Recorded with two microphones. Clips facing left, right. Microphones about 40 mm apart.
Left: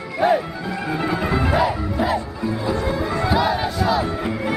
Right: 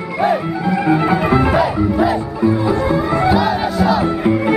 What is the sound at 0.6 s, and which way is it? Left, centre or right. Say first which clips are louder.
Music: right 9 dB; centre.